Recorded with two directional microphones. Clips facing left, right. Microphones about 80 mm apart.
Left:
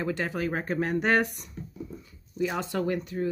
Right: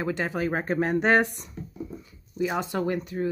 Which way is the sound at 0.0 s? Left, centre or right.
Right.